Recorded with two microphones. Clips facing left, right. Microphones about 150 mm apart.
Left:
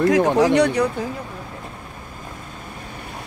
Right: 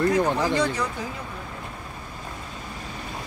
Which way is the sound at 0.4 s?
70° left (ahead or behind).